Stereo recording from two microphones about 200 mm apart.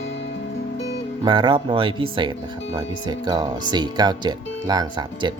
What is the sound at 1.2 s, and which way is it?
Speech, 25° right (ahead or behind).